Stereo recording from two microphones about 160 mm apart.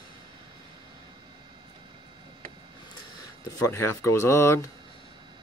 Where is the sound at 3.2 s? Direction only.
20° left (ahead or behind).